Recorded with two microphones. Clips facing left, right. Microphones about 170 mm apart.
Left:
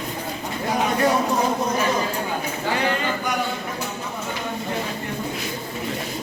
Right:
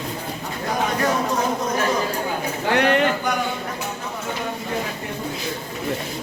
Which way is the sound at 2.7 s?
70° right (ahead or behind).